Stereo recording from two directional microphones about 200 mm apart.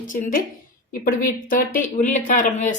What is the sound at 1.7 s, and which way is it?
A woman's voice, 40° left (ahead or behind).